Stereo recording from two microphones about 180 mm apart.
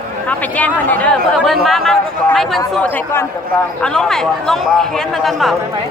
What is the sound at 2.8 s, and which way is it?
Speech, 15° left (ahead or behind).